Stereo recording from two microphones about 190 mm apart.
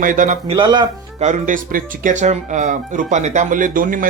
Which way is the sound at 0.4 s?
25° right (ahead or behind).